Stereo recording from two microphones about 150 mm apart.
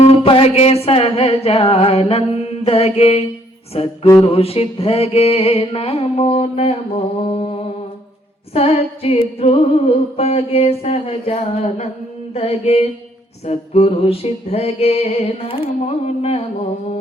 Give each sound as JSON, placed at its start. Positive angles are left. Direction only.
{"t": 0.0, "sound": "singing", "side_deg": 40}
{"t": 7.3, "sound": "music", "side_deg": 45}
{"t": 8.5, "sound": "music", "side_deg": 40}